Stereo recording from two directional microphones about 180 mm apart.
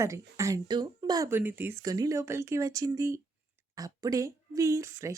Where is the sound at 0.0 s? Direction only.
15° right (ahead or behind).